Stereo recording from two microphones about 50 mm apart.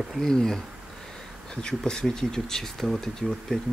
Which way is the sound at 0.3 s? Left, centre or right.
Centre.